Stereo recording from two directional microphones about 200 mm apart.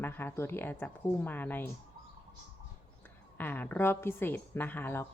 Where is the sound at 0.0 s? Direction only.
10° left (ahead or behind).